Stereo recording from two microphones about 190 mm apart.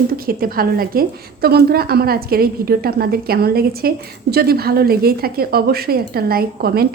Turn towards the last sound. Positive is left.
turn(degrees=-55)  # may be behind; listen again after turning